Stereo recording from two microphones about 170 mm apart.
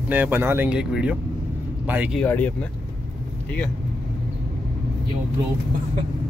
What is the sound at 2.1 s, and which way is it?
Speech, 10° left (ahead or behind).